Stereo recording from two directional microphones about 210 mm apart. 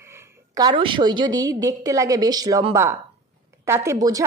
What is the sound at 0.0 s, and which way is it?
A woman's voice, 10° right (ahead or behind).